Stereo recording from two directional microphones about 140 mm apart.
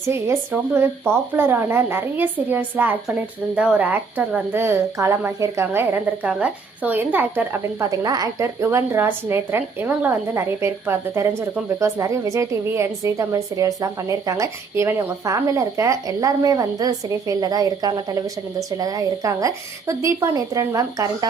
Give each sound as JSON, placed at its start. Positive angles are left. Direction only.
{"t": 0.1, "sound": "speech", "side_deg": -15}
{"t": 7.9, "sound": "a woman's voice", "side_deg": -25}